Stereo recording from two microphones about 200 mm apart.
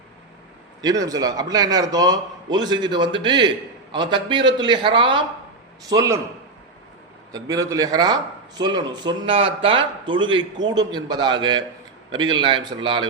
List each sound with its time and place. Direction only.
0.8 s a man's voice: 20° right (ahead or behind)
7.3 s speech: 15° right (ahead or behind)